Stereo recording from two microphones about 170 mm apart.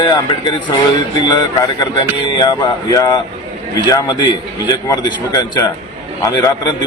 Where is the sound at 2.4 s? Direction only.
25° left (ahead or behind).